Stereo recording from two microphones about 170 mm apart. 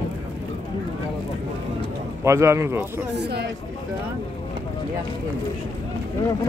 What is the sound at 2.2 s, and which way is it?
Speech, 15° right (ahead or behind).